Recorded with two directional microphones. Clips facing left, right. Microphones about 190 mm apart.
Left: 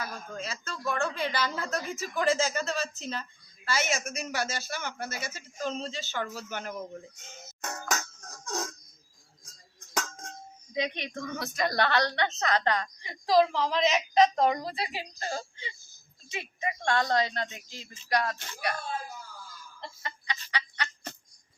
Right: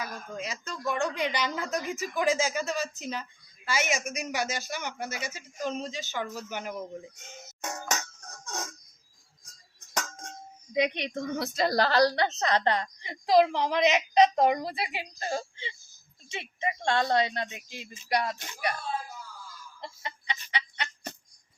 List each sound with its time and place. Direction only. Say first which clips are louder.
0.0 s speech: right 1 dB; 15° right (ahead or behind)
7.9 s a sound: even; centre (ahead or behind)
10.8 s speech: right 5 dB; 15° right (ahead or behind)
11.5 s a woman's voice: right 2 dB; 35° right (ahead or behind); by 18.7 s 15° right (ahead or behind)
20.0 s chicken: even; 20° right (ahead or behind)